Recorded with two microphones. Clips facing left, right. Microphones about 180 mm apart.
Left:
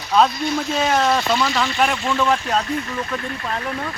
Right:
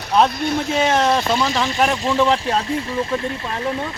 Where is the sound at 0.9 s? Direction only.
20° right (ahead or behind).